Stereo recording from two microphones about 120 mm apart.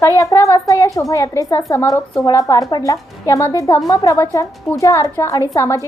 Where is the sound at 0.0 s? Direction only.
25° left (ahead or behind).